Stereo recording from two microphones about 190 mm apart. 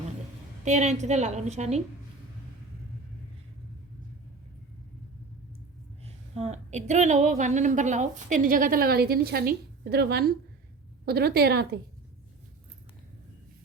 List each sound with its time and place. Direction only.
0.6 s a woman's voice: 35° right (ahead or behind)
6.3 s a woman's voice: 35° right (ahead or behind); by 11.8 s 55° right (ahead or behind)